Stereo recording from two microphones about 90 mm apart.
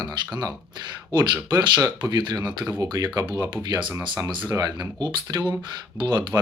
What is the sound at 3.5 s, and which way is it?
Speech, 50° right (ahead or behind).